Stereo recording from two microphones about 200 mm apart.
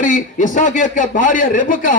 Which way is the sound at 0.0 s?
40° left (ahead or behind).